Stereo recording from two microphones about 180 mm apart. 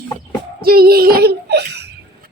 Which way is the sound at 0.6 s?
55° right (ahead or behind).